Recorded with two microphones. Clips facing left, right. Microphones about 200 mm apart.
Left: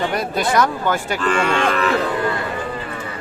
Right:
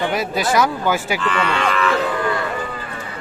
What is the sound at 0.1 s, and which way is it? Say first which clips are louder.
Speech: even; centre (ahead or behind).